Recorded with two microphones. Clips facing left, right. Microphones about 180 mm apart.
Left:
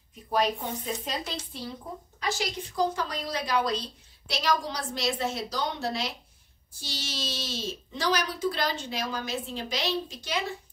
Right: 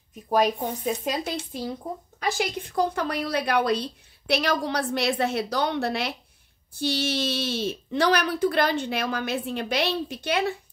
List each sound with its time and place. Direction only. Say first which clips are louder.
0.3 s a woman's voice: right 5 dB; 45° right (ahead or behind); by 10.4 s 60° right (ahead or behind)